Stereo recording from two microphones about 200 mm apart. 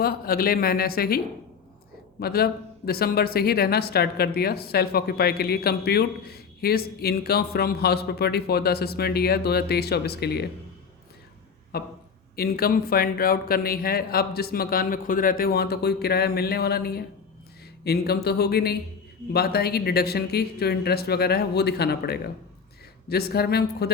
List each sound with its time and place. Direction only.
0.0 s speech: 50° left (ahead or behind)
11.7 s speech: 50° left (ahead or behind)